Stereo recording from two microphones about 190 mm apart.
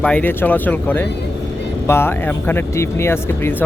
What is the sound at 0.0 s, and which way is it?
Speech, 10° left (ahead or behind).